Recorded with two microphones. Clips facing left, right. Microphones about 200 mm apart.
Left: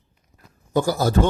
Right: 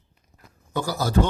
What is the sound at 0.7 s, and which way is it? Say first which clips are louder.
Speech: left 6 dB; 45° left (ahead or behind).